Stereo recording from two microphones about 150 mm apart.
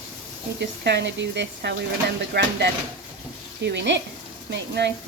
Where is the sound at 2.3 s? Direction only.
90° right.